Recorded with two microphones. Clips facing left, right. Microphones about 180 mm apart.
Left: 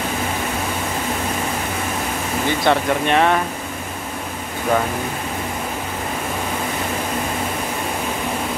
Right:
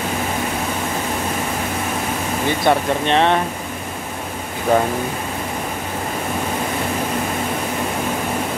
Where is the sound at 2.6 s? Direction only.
25° right (ahead or behind).